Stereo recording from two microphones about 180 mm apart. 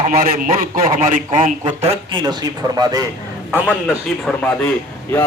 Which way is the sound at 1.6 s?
25° right (ahead or behind).